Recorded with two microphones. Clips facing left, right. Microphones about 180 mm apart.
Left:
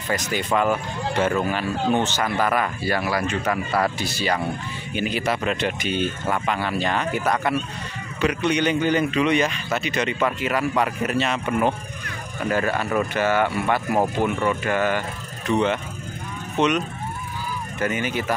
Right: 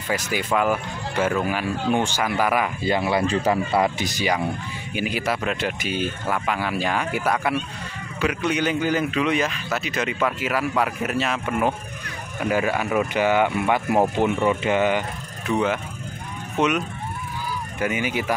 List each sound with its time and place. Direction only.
0.1 s a man's voice: 5° right (ahead or behind)
15.4 s a man's voice: 5° right (ahead or behind)